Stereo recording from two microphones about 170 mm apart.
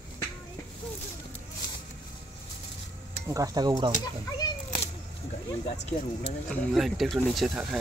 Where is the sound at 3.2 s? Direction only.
20° right (ahead or behind).